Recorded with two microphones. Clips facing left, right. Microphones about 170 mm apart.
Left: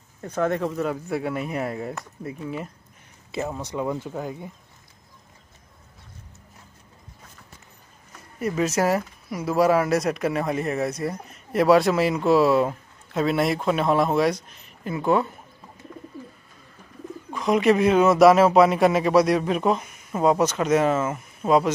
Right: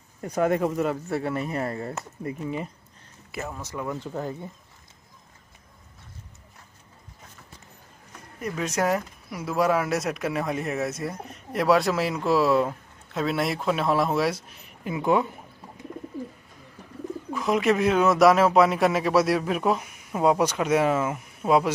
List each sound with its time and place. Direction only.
0.2 s speech: 10° right (ahead or behind)
3.3 s speech: 20° left (ahead or behind)
4.1 s speech: 5° left (ahead or behind)
8.4 s speech: centre (ahead or behind)
17.3 s speech: centre (ahead or behind)